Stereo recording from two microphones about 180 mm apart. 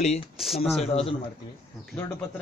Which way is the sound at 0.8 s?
35° left (ahead or behind).